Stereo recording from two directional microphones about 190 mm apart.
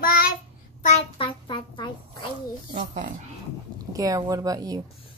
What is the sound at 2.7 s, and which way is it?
Speech, 45° right (ahead or behind).